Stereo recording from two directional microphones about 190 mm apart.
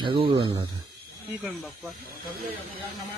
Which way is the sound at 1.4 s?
Centre (ahead or behind).